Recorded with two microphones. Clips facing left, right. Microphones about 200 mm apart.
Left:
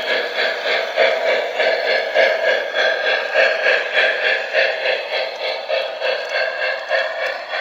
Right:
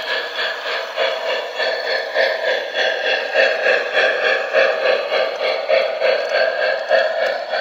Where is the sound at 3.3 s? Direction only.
30° right (ahead or behind); by 6.2 s 60° right (ahead or behind).